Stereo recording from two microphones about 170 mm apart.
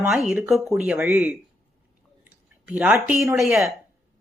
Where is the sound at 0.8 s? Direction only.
5° right (ahead or behind).